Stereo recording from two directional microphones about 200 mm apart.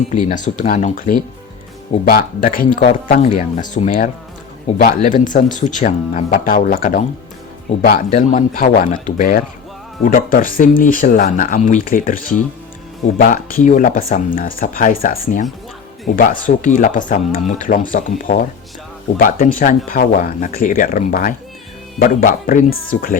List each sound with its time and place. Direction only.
0.4 s speech: 40° left (ahead or behind)